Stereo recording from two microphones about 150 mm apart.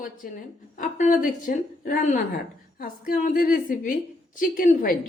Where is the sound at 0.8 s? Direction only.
60° left (ahead or behind).